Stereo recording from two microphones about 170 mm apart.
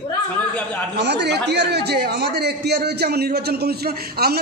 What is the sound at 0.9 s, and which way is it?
A man's voice, 80° right.